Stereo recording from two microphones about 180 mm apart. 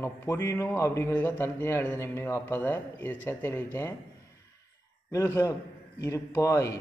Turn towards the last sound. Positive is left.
turn(degrees=15)  # may be behind; listen again after turning